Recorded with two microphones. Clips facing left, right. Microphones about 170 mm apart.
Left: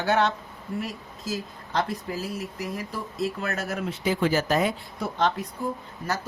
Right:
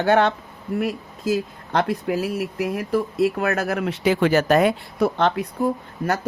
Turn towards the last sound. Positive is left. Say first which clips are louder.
# right 7 dB
turn(degrees=-60)  # may be behind; listen again after turning